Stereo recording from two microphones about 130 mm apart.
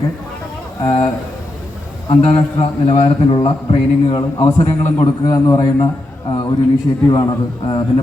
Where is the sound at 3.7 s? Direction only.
40° left (ahead or behind).